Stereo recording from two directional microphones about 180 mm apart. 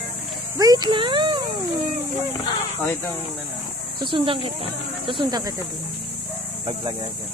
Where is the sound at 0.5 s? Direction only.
20° right (ahead or behind).